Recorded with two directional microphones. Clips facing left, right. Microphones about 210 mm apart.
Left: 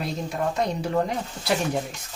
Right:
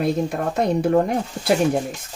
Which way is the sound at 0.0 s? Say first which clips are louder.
Right 6 dB; 55° right (ahead or behind).